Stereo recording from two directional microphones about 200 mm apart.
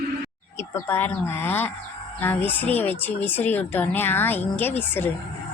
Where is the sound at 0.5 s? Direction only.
10° left (ahead or behind).